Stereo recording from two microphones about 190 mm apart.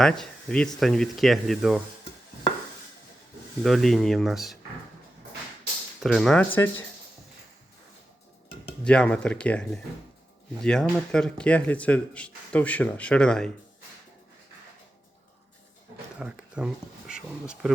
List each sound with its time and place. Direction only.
0.0 s speech: 5° left (ahead or behind)
3.6 s speech: centre (ahead or behind)
6.0 s speech: centre (ahead or behind)
8.8 s speech: 5° left (ahead or behind)
16.1 s speech: 5° right (ahead or behind)